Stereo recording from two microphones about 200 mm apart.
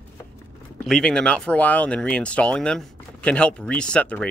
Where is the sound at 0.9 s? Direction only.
5° left (ahead or behind).